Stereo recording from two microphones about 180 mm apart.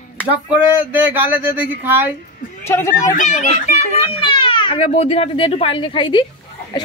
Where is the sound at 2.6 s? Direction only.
15° left (ahead or behind).